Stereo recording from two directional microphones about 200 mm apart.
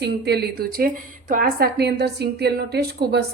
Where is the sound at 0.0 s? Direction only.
55° right (ahead or behind).